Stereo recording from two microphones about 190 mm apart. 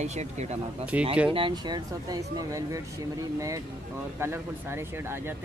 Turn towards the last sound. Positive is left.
turn(degrees=-10)  # may be behind; listen again after turning